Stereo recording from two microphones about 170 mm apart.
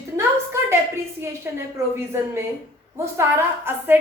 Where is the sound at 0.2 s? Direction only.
15° right (ahead or behind).